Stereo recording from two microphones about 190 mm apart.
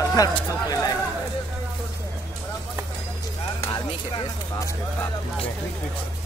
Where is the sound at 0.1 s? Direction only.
20° left (ahead or behind).